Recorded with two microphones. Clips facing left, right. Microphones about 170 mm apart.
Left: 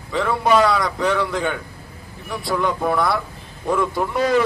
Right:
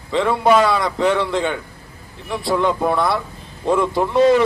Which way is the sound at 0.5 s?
Centre (ahead or behind).